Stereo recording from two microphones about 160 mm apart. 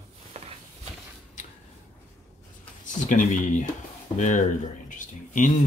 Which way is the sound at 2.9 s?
55° left (ahead or behind).